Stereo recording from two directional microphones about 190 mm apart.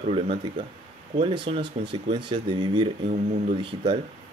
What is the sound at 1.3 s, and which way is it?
Speech, 25° right (ahead or behind).